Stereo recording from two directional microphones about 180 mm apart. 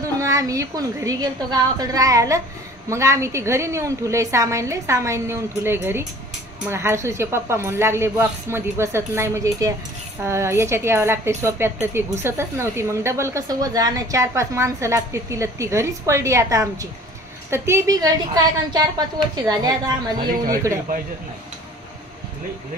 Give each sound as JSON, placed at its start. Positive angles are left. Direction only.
{"t": 0.2, "sound": "a woman's voice", "side_deg": -15}